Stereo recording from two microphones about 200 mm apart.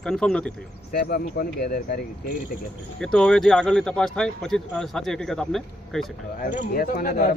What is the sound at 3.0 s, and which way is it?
Speech, 5° left (ahead or behind).